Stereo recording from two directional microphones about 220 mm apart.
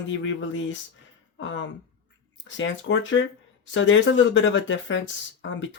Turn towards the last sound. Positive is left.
turn(degrees=55)  # may be behind; listen again after turning